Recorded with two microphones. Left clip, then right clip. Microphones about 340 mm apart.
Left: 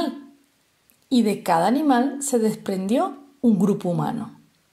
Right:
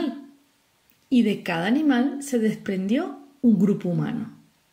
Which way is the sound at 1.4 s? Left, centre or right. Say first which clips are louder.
Left 5 dB; left.